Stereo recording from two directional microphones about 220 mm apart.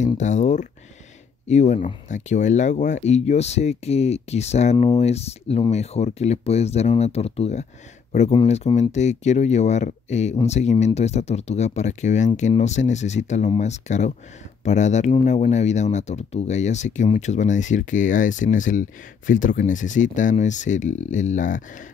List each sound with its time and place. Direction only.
0.0 s speech: 35° left (ahead or behind)